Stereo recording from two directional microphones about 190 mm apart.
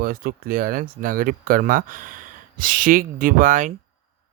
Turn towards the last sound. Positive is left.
turn(degrees=-40)  # may be behind; listen again after turning